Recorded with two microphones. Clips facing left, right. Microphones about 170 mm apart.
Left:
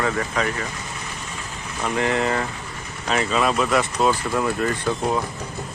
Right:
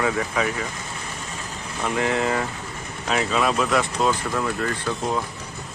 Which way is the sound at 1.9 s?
Centre (ahead or behind).